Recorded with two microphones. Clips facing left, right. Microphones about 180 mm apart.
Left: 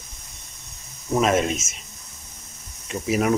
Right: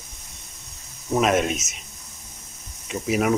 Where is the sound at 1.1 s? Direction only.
Centre (ahead or behind).